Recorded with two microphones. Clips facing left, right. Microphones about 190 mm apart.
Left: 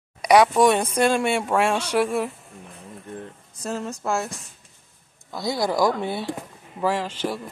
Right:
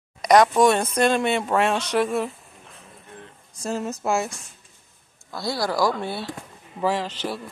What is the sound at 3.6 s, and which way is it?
Speech, centre (ahead or behind).